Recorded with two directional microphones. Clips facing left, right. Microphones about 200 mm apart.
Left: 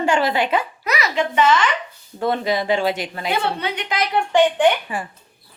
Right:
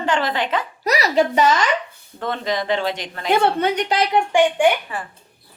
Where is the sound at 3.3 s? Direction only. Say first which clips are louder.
Right 7 dB; 50° right (ahead or behind).